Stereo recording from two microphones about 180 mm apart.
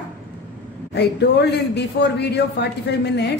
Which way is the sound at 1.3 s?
70° left (ahead or behind).